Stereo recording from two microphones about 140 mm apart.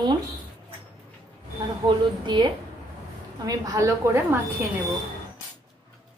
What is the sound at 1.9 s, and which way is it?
A woman's voice, 30° right (ahead or behind).